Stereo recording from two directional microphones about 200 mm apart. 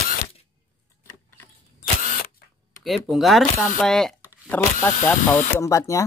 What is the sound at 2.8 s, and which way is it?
Speech, centre (ahead or behind).